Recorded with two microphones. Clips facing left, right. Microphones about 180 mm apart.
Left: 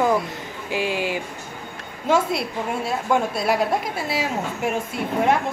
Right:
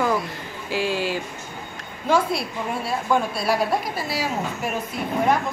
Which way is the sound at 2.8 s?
20° left (ahead or behind).